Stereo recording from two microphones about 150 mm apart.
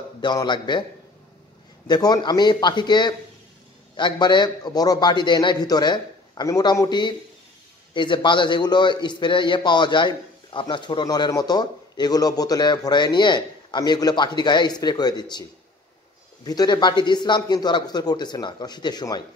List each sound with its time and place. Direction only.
0.2 s a man's voice: 30° left (ahead or behind)
1.9 s a man's voice: 25° left (ahead or behind)
16.4 s a man's voice: 25° left (ahead or behind)